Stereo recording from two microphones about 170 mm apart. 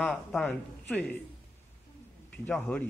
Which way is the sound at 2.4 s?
10° left (ahead or behind).